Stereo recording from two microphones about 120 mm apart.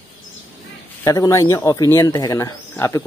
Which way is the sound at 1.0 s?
25° left (ahead or behind).